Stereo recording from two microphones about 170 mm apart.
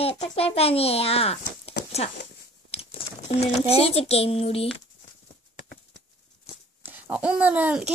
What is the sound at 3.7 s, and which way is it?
Speech, 35° left (ahead or behind).